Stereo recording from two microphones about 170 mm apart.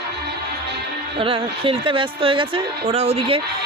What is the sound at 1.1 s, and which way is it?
A woman's voice, 30° right (ahead or behind).